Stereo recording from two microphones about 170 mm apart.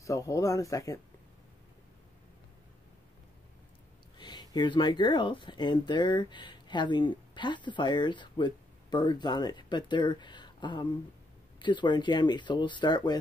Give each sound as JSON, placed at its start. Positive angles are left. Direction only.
{"t": 0.0, "sound": "speech", "side_deg": 20}
{"t": 4.2, "sound": "speech", "side_deg": 25}